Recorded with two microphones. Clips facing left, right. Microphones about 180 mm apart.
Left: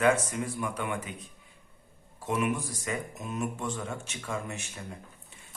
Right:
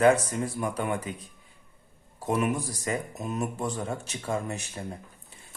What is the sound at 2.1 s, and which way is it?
Speech, 40° right (ahead or behind).